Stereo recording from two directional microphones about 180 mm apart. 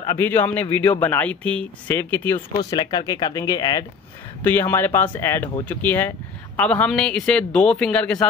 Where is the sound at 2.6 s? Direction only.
25° left (ahead or behind).